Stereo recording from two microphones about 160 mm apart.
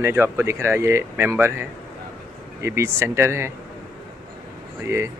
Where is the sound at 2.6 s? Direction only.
15° right (ahead or behind).